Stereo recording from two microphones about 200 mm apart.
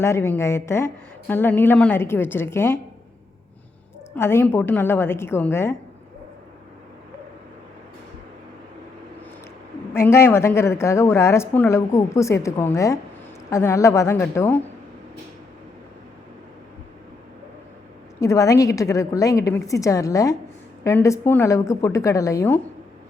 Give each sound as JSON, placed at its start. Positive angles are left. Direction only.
{"t": 0.0, "sound": "a woman's voice", "side_deg": 10}
{"t": 4.1, "sound": "a woman's voice", "side_deg": 10}
{"t": 9.9, "sound": "a woman's voice", "side_deg": 15}
{"t": 18.2, "sound": "a woman's voice", "side_deg": 15}